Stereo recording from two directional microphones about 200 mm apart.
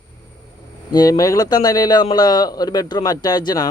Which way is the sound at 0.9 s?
20° left (ahead or behind).